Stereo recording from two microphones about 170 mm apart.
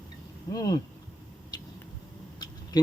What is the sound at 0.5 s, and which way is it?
Speech, 25° left (ahead or behind).